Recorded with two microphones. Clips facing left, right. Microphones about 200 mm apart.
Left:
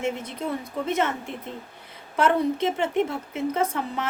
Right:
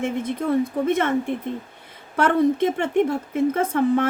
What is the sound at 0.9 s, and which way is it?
Speech, 55° right (ahead or behind).